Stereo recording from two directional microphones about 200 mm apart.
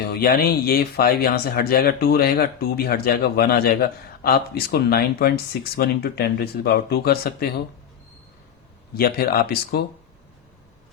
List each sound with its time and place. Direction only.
0.0 s speech: 50° left (ahead or behind)
9.0 s speech: 50° left (ahead or behind)